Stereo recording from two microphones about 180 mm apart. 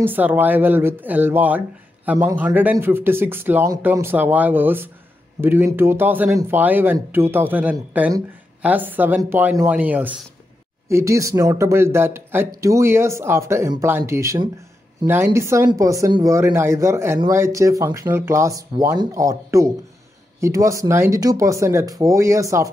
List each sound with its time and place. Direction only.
0.0 s speech: 10° right (ahead or behind)